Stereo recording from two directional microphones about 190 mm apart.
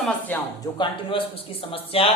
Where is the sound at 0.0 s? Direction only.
10° left (ahead or behind).